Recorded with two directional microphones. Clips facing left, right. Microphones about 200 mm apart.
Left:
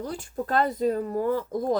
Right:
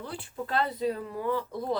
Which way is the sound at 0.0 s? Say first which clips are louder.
Left 5 dB; 45° left (ahead or behind).